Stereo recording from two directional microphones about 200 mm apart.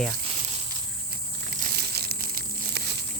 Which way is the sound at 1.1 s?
50° right (ahead or behind).